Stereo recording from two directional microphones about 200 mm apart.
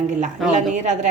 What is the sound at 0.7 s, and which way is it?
Speech, 40° right (ahead or behind).